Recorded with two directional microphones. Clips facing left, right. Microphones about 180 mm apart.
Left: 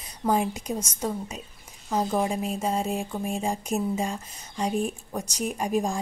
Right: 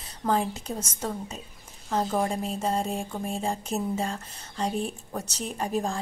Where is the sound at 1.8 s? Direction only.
5° left (ahead or behind).